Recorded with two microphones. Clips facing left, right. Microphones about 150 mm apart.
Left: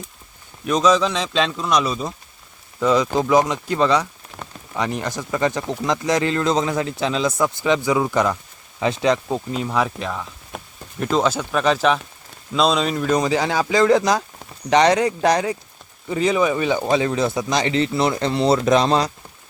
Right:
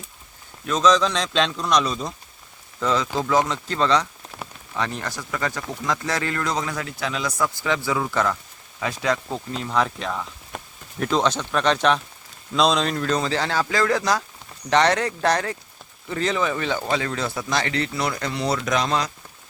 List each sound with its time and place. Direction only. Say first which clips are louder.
0.6 s speech: left 2 dB; 15° left (ahead or behind)
4.4 s rain on surface: even; 10° right (ahead or behind)
4.7 s speech: left 4 dB; 15° left (ahead or behind)